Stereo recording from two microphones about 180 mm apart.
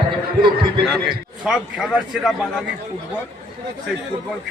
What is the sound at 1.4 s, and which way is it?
Speech, 5° right (ahead or behind).